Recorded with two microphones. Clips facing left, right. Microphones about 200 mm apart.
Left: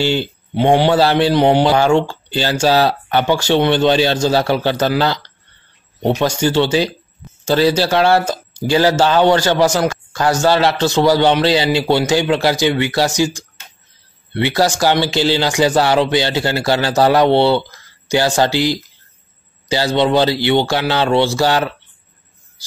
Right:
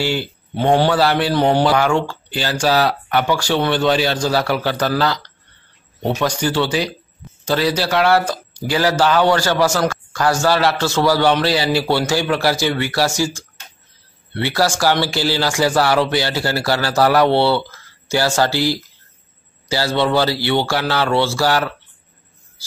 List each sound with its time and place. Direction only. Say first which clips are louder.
0.0 s a man's voice: left 3 dB; 25° left (ahead or behind)